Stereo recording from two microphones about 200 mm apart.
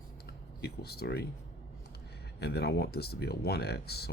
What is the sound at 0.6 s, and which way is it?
Speech, 50° left (ahead or behind).